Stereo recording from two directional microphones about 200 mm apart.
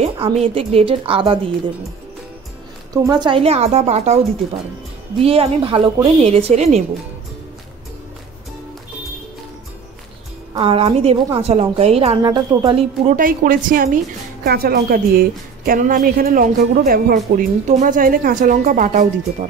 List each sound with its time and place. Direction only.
0.0 s a woman's voice: 30° right (ahead or behind)
2.9 s a woman's voice: 20° right (ahead or behind); by 4.2 s 35° right (ahead or behind)
5.2 s a woman's voice: 30° right (ahead or behind)
10.5 s a woman's voice: 25° right (ahead or behind)
12.2 s a woman's voice: 20° right (ahead or behind)
13.1 s a woman's voice: 45° right (ahead or behind)